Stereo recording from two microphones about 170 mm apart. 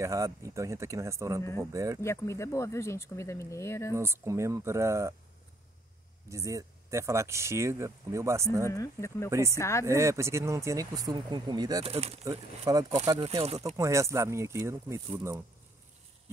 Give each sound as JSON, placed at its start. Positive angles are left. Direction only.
{"t": 0.0, "sound": "speech", "side_deg": -15}
{"t": 2.0, "sound": "speech", "side_deg": 15}
{"t": 3.9, "sound": "speech", "side_deg": -15}
{"t": 6.2, "sound": "speech", "side_deg": -15}
{"t": 8.6, "sound": "speech", "side_deg": 20}
{"t": 9.3, "sound": "speech", "side_deg": -15}
{"t": 9.6, "sound": "speech", "side_deg": 15}
{"t": 9.8, "sound": "speech", "side_deg": -15}
{"t": 11.8, "sound": "speech", "side_deg": -35}
{"t": 12.3, "sound": "speech", "side_deg": -20}
{"t": 13.3, "sound": "speech", "side_deg": -35}
{"t": 13.7, "sound": "speech", "side_deg": -15}